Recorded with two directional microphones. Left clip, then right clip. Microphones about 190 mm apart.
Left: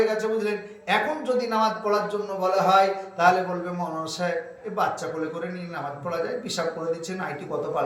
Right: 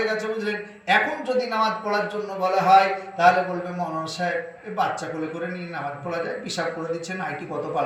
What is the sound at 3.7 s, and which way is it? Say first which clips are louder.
Speech: right 2 dB; 20° left (ahead or behind).